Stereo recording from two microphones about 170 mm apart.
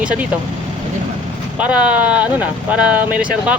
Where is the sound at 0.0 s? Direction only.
5° right (ahead or behind).